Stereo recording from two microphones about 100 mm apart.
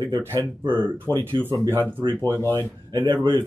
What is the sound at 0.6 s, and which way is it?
Speech, 55° right (ahead or behind).